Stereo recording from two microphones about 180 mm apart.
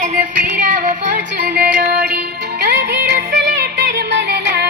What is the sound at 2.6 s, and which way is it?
Music, 70° right (ahead or behind).